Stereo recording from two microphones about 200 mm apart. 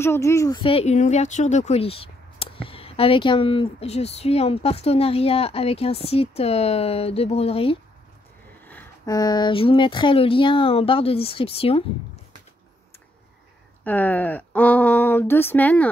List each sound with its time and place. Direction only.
0.0 s speech: 15° left (ahead or behind); by 7.7 s 30° left (ahead or behind)
8.6 s speech: 15° left (ahead or behind); by 11.8 s 30° left (ahead or behind)
13.8 s speech: 10° left (ahead or behind)